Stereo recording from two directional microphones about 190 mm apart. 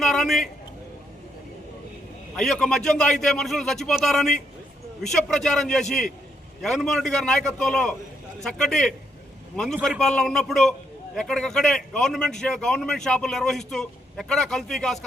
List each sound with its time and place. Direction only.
0.0 s a man's voice: centre (ahead or behind)
2.3 s a man's voice: 5° left (ahead or behind)